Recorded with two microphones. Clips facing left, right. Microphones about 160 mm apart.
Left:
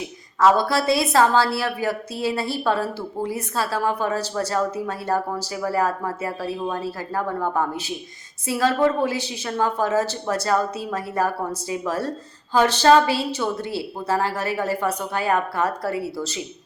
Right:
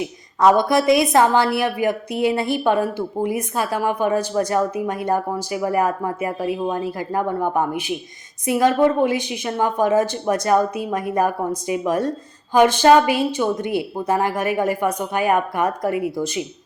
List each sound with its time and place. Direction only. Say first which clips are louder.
0.3 s a woman's voice: right 3 dB; 20° right (ahead or behind)